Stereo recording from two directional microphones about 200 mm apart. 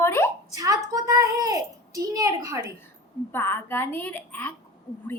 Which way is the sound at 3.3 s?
10° left (ahead or behind).